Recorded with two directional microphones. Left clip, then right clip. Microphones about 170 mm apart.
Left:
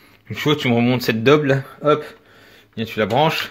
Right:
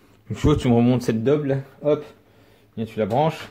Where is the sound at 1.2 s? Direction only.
30° left (ahead or behind).